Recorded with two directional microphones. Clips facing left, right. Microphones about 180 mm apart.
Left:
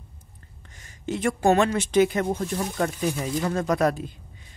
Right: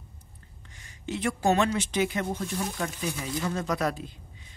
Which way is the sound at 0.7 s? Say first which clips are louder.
Left 4 dB; 45° left (ahead or behind).